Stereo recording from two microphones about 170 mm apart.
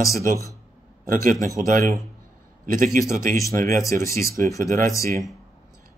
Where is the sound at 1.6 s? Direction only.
50° right (ahead or behind).